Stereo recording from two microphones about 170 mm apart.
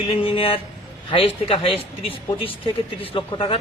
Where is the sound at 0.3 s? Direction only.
30° left (ahead or behind).